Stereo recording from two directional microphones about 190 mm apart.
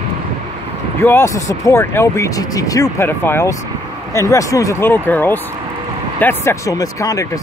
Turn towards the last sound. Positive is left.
turn(degrees=20)  # may be behind; listen again after turning